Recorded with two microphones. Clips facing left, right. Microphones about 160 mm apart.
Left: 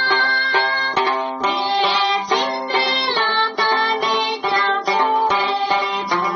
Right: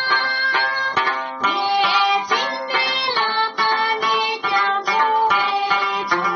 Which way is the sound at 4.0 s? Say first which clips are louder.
Left 1 dB; 25° left (ahead or behind).